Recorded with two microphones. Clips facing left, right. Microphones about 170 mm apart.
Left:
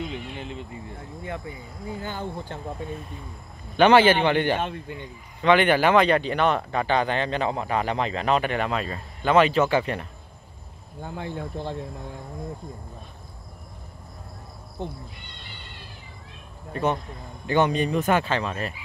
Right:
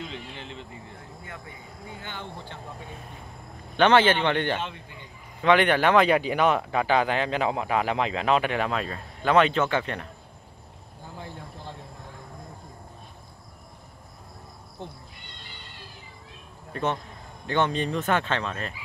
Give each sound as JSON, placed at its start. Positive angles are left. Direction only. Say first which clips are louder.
{"t": 0.1, "sound": "a sound", "louder": "left 5 dB", "side_deg": 15}
{"t": 1.2, "sound": "speech", "louder": "left 11 dB", "side_deg": 25}
{"t": 3.7, "sound": "speech", "louder": "left 3 dB", "side_deg": 10}
{"t": 4.6, "sound": "speech", "louder": "left 5 dB", "side_deg": 50}
{"t": 5.4, "sound": "speech", "louder": "left 2 dB", "side_deg": 0}
{"t": 11.1, "sound": "speech", "louder": "left 9 dB", "side_deg": 75}
{"t": 16.7, "sound": "speech", "louder": "left 3 dB", "side_deg": 10}